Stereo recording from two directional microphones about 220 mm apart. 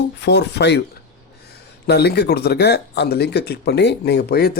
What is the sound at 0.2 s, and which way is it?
Speech, 50° left (ahead or behind).